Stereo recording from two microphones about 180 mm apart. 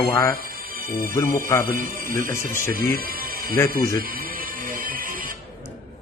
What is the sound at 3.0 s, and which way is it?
Music, 55° right (ahead or behind).